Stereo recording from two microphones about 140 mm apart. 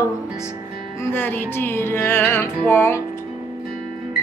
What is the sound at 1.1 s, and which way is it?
Music, 15° left (ahead or behind).